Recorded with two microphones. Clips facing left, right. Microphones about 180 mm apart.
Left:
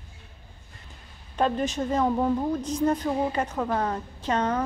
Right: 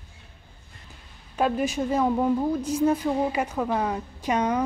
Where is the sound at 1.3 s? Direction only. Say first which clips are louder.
Right 1 dB; 10° right (ahead or behind).